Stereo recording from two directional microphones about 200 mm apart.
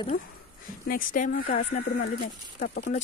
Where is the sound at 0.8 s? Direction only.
40° left (ahead or behind).